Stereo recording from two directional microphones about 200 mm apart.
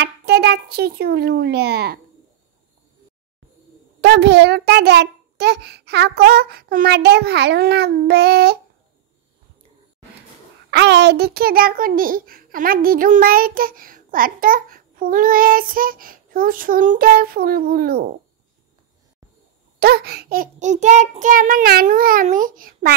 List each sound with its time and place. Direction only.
0.0 s a child's voice: 55° right (ahead or behind)
4.0 s a child's voice: 60° right (ahead or behind)
10.7 s a child's voice: 60° right (ahead or behind)
19.8 s a child's voice: 50° right (ahead or behind)